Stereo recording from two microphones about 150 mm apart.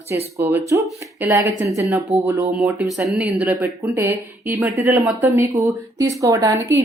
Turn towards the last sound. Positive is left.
turn(degrees=-20)  # may be behind; listen again after turning